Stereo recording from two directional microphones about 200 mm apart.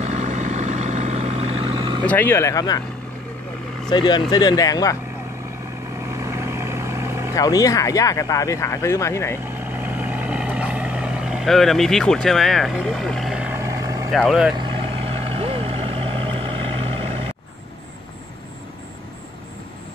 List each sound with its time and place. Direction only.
0.0 s vehicle: 35° right (ahead or behind)
2.0 s speech: 10° left (ahead or behind)
3.9 s speech: 20° left (ahead or behind)
6.1 s vehicle: 15° right (ahead or behind)
7.3 s speech: 15° left (ahead or behind)
9.5 s vehicle: 10° right (ahead or behind)
14.1 s speech: centre (ahead or behind)
14.6 s vehicle: 25° right (ahead or behind)